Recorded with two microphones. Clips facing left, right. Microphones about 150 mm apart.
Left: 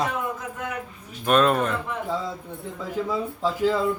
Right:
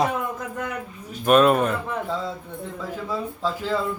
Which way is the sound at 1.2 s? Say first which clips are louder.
Right 3 dB; 5° right (ahead or behind).